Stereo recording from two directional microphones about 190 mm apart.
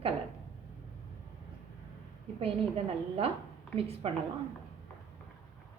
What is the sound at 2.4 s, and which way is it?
A woman's voice, 30° right (ahead or behind).